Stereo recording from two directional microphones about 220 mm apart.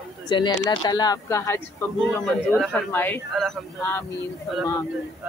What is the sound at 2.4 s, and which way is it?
Speech, centre (ahead or behind).